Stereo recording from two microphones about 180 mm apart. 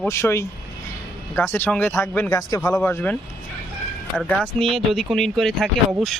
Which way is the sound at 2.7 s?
10° left (ahead or behind).